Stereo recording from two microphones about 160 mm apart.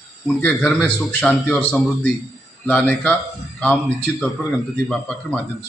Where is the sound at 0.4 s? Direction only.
5° left (ahead or behind).